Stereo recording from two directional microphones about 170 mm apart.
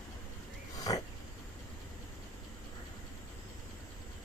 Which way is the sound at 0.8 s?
20° left (ahead or behind).